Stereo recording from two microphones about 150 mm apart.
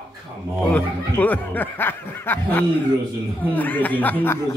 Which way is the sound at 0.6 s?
10° left (ahead or behind).